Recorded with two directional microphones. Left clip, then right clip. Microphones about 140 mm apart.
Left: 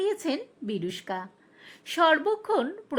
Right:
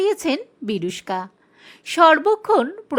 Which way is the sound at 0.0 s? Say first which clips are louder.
Right 8 dB; 25° right (ahead or behind).